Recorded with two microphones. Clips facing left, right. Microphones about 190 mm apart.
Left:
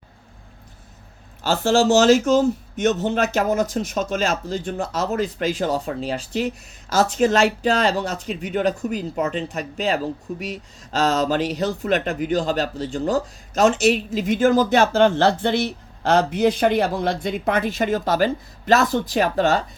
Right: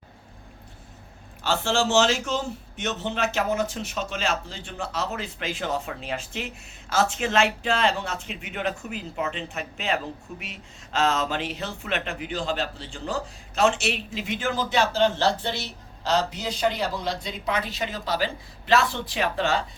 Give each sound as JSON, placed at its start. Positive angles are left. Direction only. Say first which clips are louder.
{"t": 1.5, "sound": "a man's voice", "louder": "left 7 dB", "side_deg": 40}